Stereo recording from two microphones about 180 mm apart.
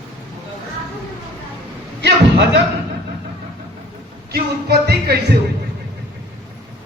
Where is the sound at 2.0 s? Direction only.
75° right (ahead or behind).